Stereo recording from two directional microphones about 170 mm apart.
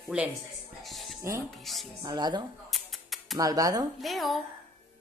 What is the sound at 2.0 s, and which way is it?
Speech, 25° right (ahead or behind).